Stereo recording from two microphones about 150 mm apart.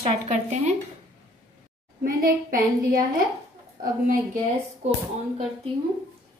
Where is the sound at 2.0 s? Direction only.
70° right (ahead or behind).